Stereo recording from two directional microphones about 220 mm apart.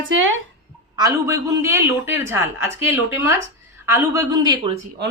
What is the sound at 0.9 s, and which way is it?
A man's voice, 15° right (ahead or behind).